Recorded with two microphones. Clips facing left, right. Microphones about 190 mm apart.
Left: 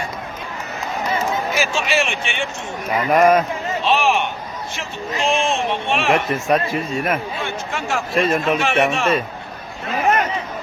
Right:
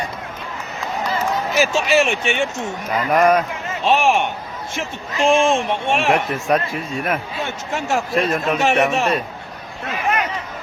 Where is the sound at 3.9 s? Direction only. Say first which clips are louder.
Right 2 dB; 45° right (ahead or behind).